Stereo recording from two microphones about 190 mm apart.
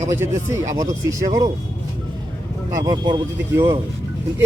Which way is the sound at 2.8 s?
25° right (ahead or behind).